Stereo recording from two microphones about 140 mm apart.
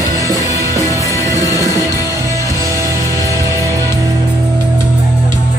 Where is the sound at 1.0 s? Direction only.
25° left (ahead or behind).